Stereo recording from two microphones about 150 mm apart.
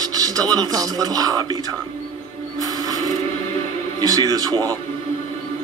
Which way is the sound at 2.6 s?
25° right (ahead or behind).